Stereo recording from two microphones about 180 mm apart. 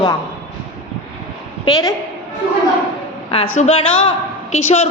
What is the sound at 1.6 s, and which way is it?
Speech, 20° left (ahead or behind).